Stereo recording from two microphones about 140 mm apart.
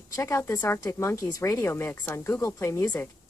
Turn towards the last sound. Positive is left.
turn(degrees=15)  # may be behind; listen again after turning